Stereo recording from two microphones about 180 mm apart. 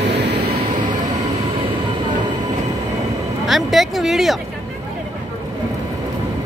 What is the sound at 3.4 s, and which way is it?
Speech, centre (ahead or behind).